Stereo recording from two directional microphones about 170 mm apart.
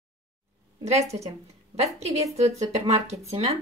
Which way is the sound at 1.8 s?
40° right (ahead or behind).